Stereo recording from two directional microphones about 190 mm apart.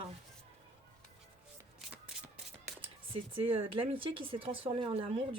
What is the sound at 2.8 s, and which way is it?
Speech, 30° right (ahead or behind).